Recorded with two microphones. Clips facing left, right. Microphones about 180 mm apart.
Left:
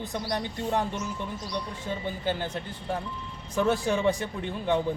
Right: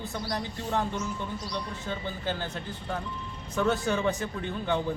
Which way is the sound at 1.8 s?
10° left (ahead or behind).